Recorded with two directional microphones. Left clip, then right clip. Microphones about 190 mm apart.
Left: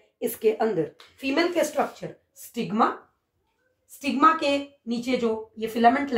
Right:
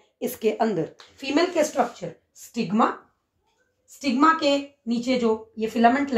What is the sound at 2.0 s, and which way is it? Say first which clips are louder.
Speech: right 2 dB; 30° right (ahead or behind).